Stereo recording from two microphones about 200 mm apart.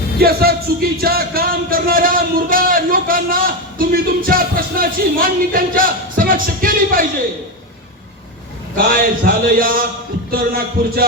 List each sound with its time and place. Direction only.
0.2 s speech: 50° right (ahead or behind)
8.7 s a man's voice: 45° right (ahead or behind)